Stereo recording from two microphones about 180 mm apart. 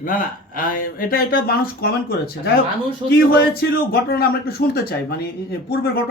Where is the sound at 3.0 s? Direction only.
30° right (ahead or behind).